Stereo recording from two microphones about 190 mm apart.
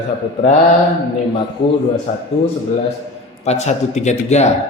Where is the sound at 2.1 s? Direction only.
35° left (ahead or behind).